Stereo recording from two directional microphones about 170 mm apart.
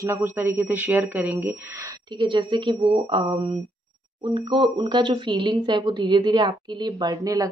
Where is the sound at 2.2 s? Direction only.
30° right (ahead or behind).